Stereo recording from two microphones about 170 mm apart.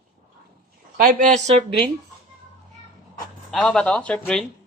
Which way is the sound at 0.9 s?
50° right (ahead or behind).